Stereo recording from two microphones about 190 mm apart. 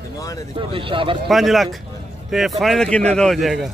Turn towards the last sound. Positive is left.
turn(degrees=0)  # may be behind; listen again after turning